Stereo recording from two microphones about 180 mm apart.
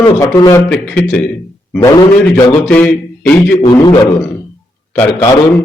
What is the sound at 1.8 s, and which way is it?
Speech, 20° left (ahead or behind).